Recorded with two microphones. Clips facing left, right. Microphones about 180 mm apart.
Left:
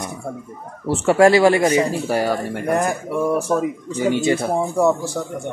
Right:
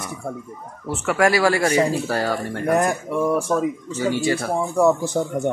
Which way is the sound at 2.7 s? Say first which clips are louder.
Right 1 dB; centre (ahead or behind).